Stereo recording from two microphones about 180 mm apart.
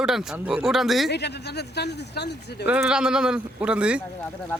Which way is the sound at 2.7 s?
5° right (ahead or behind).